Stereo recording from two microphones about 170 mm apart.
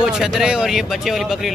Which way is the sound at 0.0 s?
5° right (ahead or behind).